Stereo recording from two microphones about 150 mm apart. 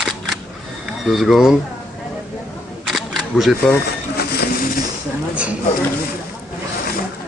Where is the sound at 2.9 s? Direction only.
Centre (ahead or behind).